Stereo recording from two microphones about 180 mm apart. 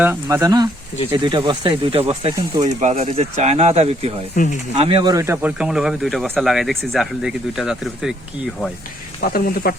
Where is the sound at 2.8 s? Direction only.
40° right (ahead or behind).